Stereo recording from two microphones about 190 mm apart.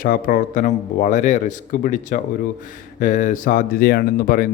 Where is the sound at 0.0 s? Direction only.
45° left (ahead or behind).